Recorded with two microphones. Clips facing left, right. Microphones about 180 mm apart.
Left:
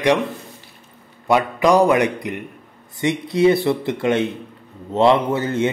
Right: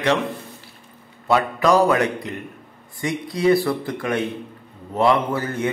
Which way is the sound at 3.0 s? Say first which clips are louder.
Left 6 dB; 25° left (ahead or behind).